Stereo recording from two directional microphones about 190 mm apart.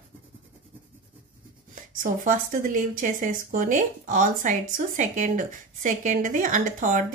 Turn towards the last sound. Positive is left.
turn(degrees=-45)  # may be behind; listen again after turning